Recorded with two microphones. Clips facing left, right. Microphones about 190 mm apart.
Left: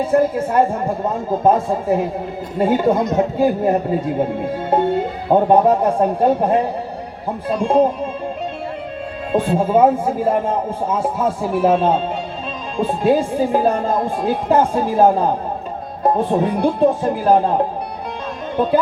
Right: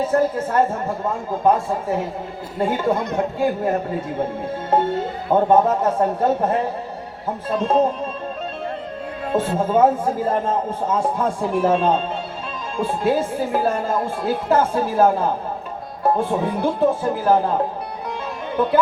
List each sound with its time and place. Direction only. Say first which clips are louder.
0.1 s a man's voice: left 3 dB; 10° left (ahead or behind)
5.3 s a man's voice: left 3 dB; 15° left (ahead or behind)
7.6 s a man's voice: left 3 dB; 10° left (ahead or behind)
9.3 s a man's voice: left 3 dB; 15° left (ahead or behind)
18.5 s speech: left 3 dB; 15° left (ahead or behind)